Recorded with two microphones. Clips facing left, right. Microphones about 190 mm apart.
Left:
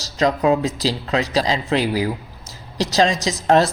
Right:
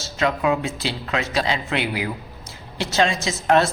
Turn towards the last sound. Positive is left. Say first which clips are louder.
# left 2 dB
turn(degrees=35)  # may be behind; listen again after turning